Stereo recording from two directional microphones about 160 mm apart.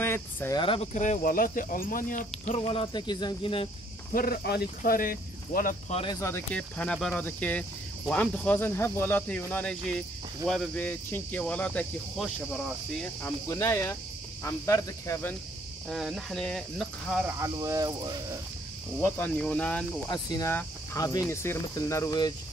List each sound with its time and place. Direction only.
0.0 s speech: 15° left (ahead or behind)
0.6 s speech: 35° left (ahead or behind)
0.9 s speech: 50° left (ahead or behind)
2.5 s speech: 35° left (ahead or behind)
4.1 s speech: 70° left (ahead or behind)
6.0 s speech: 25° left (ahead or behind)
6.3 s speech: 5° left (ahead or behind)
13.2 s speech: 20° left (ahead or behind)
15.9 s speech: centre (ahead or behind)
17.3 s speech: 20° right (ahead or behind)
18.9 s speech: 10° left (ahead or behind)
20.1 s speech: 25° left (ahead or behind)